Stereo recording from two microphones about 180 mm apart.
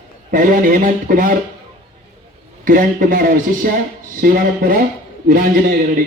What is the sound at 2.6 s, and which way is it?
Speech, 50° right (ahead or behind).